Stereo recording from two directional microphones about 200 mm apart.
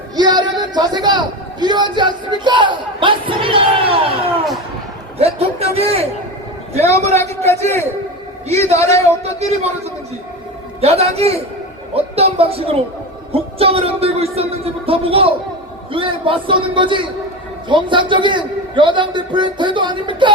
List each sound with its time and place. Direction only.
0.2 s a sound: 20° right (ahead or behind)
5.2 s a sound: 30° right (ahead or behind)
7.1 s a man's voice: 15° left (ahead or behind)
8.4 s a man's voice: 30° right (ahead or behind)
8.7 s a man's voice: 15° left (ahead or behind)
9.0 s a man's voice: 30° right (ahead or behind)